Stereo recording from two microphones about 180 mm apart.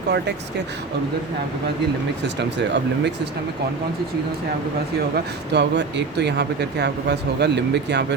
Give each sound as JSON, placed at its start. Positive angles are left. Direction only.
{"t": 2.2, "sound": "speech", "side_deg": -75}
{"t": 5.1, "sound": "speech", "side_deg": -70}